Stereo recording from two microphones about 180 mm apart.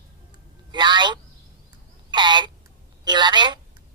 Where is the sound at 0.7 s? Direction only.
25° right (ahead or behind).